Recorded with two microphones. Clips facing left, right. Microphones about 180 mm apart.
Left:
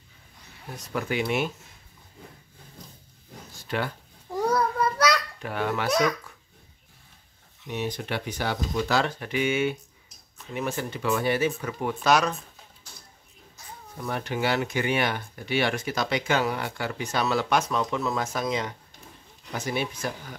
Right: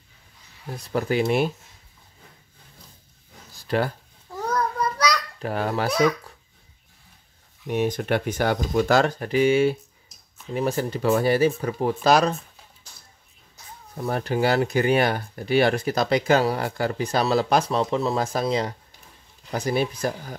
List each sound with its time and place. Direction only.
0.8 s speech: 35° right (ahead or behind)
3.5 s a sound: 40° right (ahead or behind)
4.3 s child singing: 10° left (ahead or behind)
5.4 s speech: 35° right (ahead or behind)
5.9 s a child's voice: centre (ahead or behind)
7.6 s speech: 50° right (ahead or behind); by 12.4 s 35° right (ahead or behind)
13.9 s speech: 40° right (ahead or behind)